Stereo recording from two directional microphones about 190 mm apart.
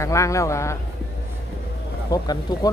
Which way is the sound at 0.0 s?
15° left (ahead or behind).